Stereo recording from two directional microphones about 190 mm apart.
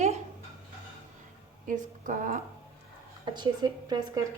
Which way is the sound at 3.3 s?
25° right (ahead or behind).